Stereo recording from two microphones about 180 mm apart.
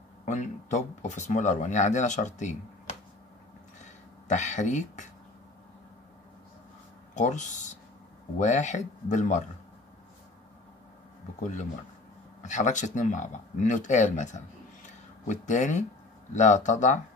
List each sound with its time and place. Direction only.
0.2 s speech: 40° left (ahead or behind)
4.3 s speech: 40° left (ahead or behind)
7.2 s speech: 45° left (ahead or behind)
12.4 s speech: 40° left (ahead or behind)